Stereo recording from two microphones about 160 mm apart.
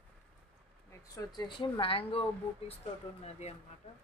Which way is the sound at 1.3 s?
30° left (ahead or behind).